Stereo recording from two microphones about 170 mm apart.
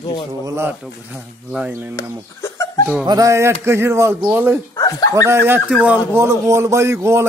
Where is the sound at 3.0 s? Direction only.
20° right (ahead or behind).